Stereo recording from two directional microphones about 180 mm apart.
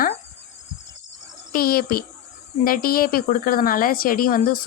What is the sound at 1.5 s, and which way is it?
A child's voice, 55° left (ahead or behind).